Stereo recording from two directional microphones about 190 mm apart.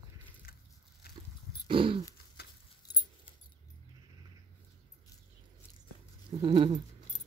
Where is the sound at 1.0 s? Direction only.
55° left (ahead or behind).